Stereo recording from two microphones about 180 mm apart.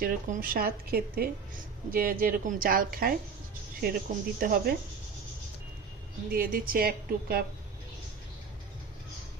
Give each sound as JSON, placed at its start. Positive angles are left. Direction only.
{"t": 0.0, "sound": "a woman's voice", "side_deg": -55}
{"t": 6.3, "sound": "a woman's voice", "side_deg": -50}